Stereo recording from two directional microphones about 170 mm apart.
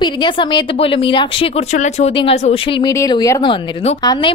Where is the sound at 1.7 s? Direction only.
40° left (ahead or behind).